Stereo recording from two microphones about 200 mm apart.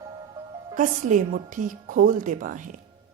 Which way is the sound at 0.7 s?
40° right (ahead or behind).